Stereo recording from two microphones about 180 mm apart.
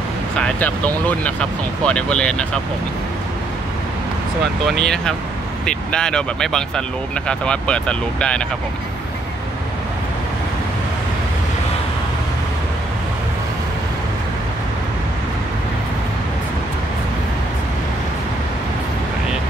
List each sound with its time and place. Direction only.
0.4 s speech: 10° left (ahead or behind)
4.6 s speech: centre (ahead or behind)